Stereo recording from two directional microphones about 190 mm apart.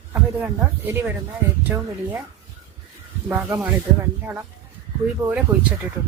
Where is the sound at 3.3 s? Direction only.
10° right (ahead or behind).